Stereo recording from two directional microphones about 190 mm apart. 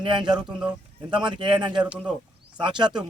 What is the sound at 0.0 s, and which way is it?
A man's voice, 25° right (ahead or behind).